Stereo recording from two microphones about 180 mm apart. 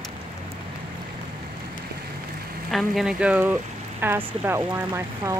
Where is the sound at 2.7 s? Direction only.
Centre (ahead or behind).